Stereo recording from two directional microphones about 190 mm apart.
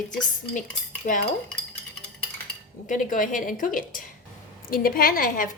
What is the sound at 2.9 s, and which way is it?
A woman's voice, 45° left (ahead or behind).